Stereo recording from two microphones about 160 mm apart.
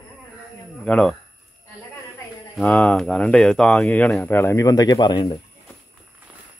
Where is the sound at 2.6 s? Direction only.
5° left (ahead or behind); by 5.4 s 25° left (ahead or behind).